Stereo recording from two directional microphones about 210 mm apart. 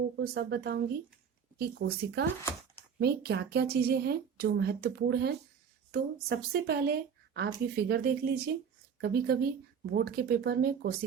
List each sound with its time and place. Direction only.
0.3 s speech: 50° right (ahead or behind)